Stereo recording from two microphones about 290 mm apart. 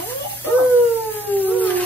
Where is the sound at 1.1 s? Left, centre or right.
Centre.